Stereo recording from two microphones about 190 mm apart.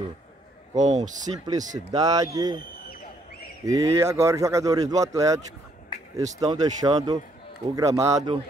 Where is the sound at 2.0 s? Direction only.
20° right (ahead or behind).